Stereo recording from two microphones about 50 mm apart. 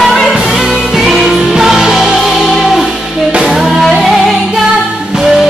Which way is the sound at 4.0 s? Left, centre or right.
Centre.